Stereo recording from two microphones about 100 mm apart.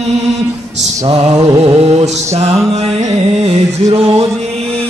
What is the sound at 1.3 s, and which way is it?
Speech, 35° right (ahead or behind).